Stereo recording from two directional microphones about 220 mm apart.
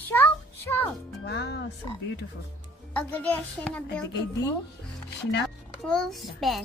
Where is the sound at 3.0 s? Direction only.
5° left (ahead or behind).